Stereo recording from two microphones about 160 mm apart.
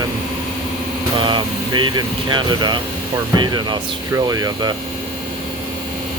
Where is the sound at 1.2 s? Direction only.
30° right (ahead or behind).